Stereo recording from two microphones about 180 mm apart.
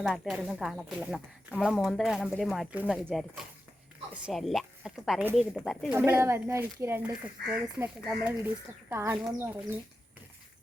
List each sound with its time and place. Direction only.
0.0 s speech: 5° right (ahead or behind)
6.1 s speech: 15° right (ahead or behind)